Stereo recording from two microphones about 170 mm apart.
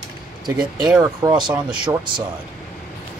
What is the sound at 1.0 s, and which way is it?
Speech, 25° right (ahead or behind).